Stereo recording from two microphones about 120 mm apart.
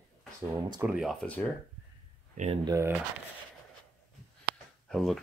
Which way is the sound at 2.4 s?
90° right.